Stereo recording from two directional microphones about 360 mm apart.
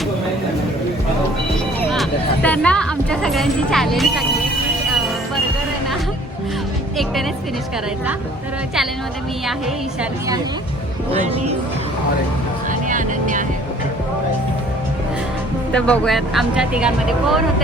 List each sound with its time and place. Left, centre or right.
1.8 s speech: centre
10.0 s a woman's voice: centre
12.9 s speech: right
15.7 s speech: centre